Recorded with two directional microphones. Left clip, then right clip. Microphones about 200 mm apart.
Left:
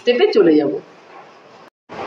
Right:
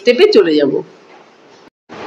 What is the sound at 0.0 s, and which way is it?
Speech, 60° right (ahead or behind).